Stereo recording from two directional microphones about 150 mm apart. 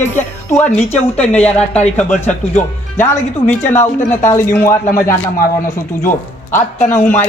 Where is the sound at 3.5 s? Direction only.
15° left (ahead or behind).